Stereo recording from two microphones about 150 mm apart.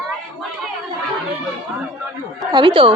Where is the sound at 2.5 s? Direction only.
30° right (ahead or behind).